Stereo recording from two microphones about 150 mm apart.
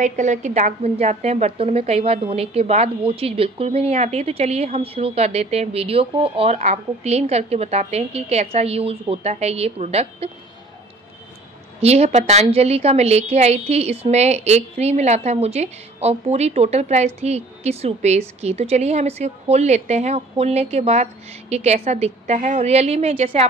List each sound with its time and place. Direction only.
0.0 s a woman's voice: 55° right (ahead or behind)
11.8 s a woman's voice: 45° right (ahead or behind)